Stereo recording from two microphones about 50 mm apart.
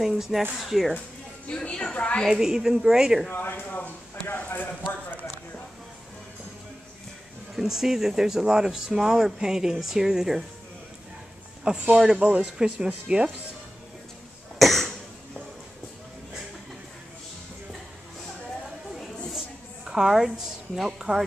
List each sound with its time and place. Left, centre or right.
0.0 s speech: centre
1.6 s a woman's voice: centre
2.2 s speech: centre
3.4 s speech: left
7.5 s speech: centre
11.7 s speech: right
12.5 s speech: centre
14.6 s cough: centre
19.8 s speech: centre